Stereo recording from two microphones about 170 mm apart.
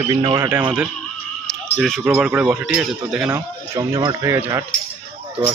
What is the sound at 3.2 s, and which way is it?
Speech, 20° right (ahead or behind).